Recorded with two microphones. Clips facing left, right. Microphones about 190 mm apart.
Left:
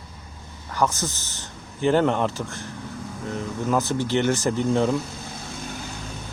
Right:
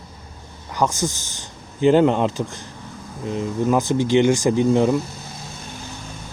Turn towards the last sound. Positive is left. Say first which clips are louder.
# right 5 dB
turn(degrees=-15)  # may be behind; listen again after turning